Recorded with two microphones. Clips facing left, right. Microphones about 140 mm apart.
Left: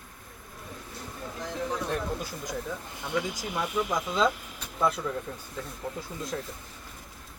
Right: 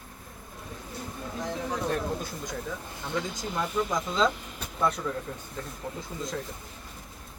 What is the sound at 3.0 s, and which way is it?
Speech, 15° left (ahead or behind).